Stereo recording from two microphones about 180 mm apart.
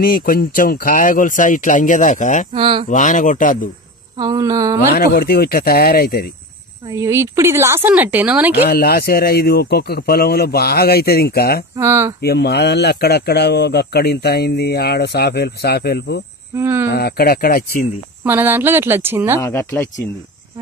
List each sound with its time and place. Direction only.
0.0 s speech: 55° left (ahead or behind)
2.5 s a sound: 30° right (ahead or behind)
2.9 s speech: 45° left (ahead or behind)
4.2 s a sound: 20° right (ahead or behind)
4.9 s speech: 55° left (ahead or behind)
6.9 s a woman's voice: 15° right (ahead or behind)
8.6 s speech: 55° left (ahead or behind)
11.7 s a woman's voice: 15° right (ahead or behind)
12.2 s speech: 65° left (ahead or behind)
16.5 s a woman's voice: 15° right (ahead or behind)
16.9 s speech: 60° left (ahead or behind)
18.2 s a woman's voice: 10° right (ahead or behind)
19.4 s speech: 15° left (ahead or behind)